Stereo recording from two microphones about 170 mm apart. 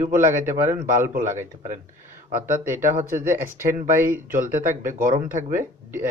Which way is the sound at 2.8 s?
45° right (ahead or behind).